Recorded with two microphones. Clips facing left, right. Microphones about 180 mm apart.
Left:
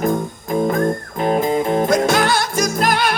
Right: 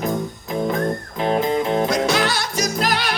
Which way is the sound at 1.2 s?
45° left (ahead or behind).